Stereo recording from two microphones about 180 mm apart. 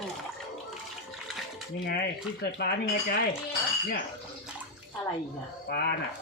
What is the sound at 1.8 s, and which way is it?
Speech, 60° left (ahead or behind).